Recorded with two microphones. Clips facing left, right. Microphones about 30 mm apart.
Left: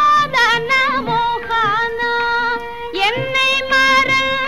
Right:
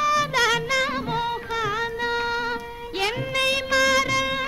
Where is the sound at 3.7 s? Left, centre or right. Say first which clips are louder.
Left 8 dB; left.